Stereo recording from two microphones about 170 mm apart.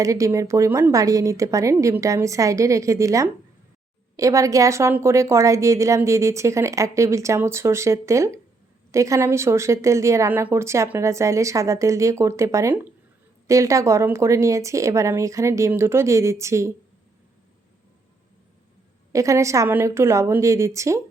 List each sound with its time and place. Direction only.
0.0 s a woman's voice: 20° right (ahead or behind)
19.1 s a woman's voice: 20° right (ahead or behind)